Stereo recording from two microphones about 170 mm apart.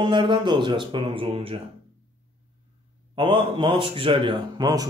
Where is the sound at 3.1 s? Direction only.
30° right (ahead or behind).